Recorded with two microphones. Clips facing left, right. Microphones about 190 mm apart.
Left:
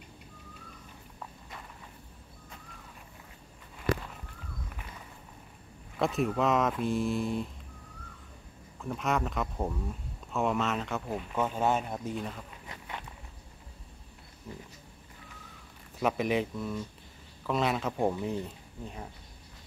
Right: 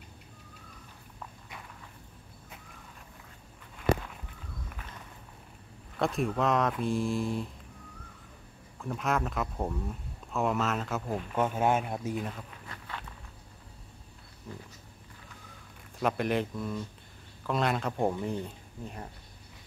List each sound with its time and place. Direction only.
5.9 s speech: centre (ahead or behind)
8.8 s speech: centre (ahead or behind)
12.6 s a sound: 20° left (ahead or behind)
16.0 s speech: centre (ahead or behind)